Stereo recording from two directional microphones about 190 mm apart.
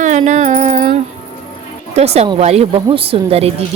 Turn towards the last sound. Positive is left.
turn(degrees=-30)  # may be behind; listen again after turning